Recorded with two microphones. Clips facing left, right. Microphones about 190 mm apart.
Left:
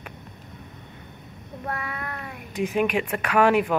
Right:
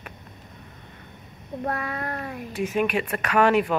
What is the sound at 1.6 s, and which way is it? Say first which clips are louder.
Child singing: right 3 dB; 35° right (ahead or behind).